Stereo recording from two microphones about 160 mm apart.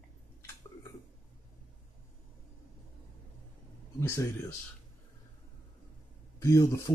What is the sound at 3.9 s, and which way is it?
Speech, 15° left (ahead or behind).